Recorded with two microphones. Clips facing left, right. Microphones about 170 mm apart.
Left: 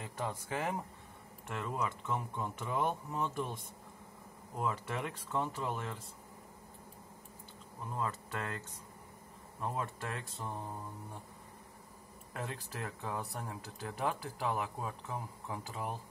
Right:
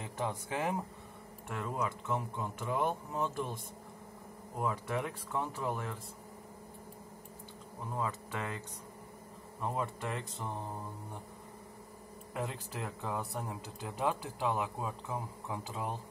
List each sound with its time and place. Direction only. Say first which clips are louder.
0.0 s speech: right 2 dB; 20° right (ahead or behind)
4.6 s speech: right 2 dB; 5° right (ahead or behind)
7.9 s speech: right 1 dB; 10° right (ahead or behind)
9.6 s speech: right 2 dB; 15° right (ahead or behind)
12.4 s speech: right 3 dB; 15° right (ahead or behind)